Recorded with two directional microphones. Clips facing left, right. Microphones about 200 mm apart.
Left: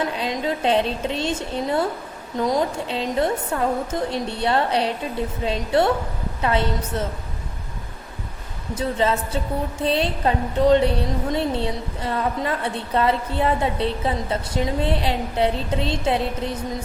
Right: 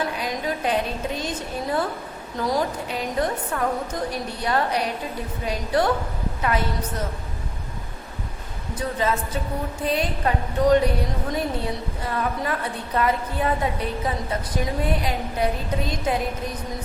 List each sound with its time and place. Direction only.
0.0 s a woman's voice: 25° left (ahead or behind)
8.8 s a woman's voice: 25° left (ahead or behind)